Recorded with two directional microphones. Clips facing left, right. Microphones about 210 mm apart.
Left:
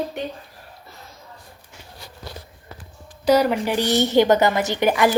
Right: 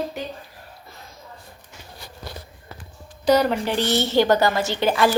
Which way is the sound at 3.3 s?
10° left (ahead or behind).